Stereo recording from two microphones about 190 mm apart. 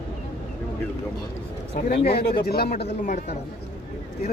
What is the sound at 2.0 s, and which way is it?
Speech, 55° left (ahead or behind).